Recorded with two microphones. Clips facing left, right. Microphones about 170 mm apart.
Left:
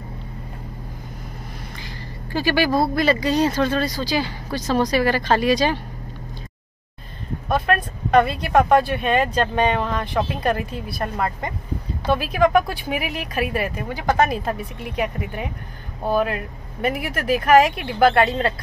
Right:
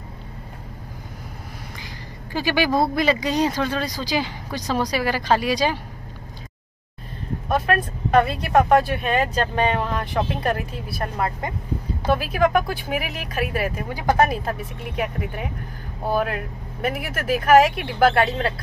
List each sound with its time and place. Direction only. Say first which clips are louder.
2.3 s speech: left 1 dB; 15° right (ahead or behind)
7.4 s speech: left 1 dB; 5° right (ahead or behind)